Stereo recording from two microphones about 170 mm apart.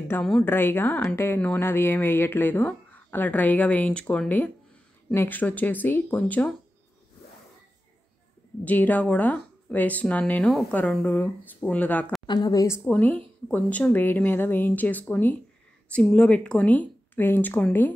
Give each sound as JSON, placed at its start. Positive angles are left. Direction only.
{"t": 0.1, "sound": "speech", "side_deg": 5}
{"t": 8.6, "sound": "speech", "side_deg": 10}
{"t": 12.3, "sound": "a woman's voice", "side_deg": 25}